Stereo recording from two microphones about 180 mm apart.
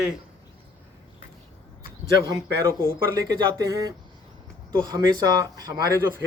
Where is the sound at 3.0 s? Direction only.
15° right (ahead or behind).